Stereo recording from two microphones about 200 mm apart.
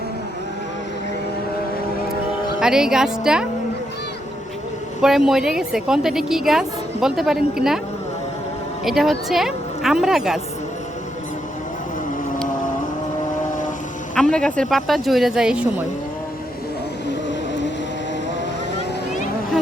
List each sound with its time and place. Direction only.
2.6 s a woman's voice: 5° right (ahead or behind)
5.0 s a woman's voice: centre (ahead or behind)
8.8 s a woman's voice: centre (ahead or behind)
14.2 s a woman's voice: 5° left (ahead or behind)
17.1 s vehicle: 60° left (ahead or behind)